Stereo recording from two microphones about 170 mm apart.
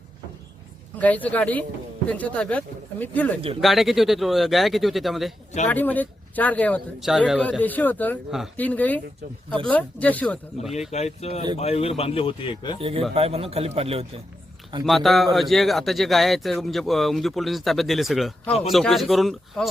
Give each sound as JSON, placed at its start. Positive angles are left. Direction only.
{"t": 0.9, "sound": "speech", "side_deg": 10}
{"t": 5.6, "sound": "speech", "side_deg": 10}
{"t": 10.8, "sound": "speech", "side_deg": 40}
{"t": 12.8, "sound": "a man's voice", "side_deg": -35}
{"t": 14.8, "sound": "speech", "side_deg": 0}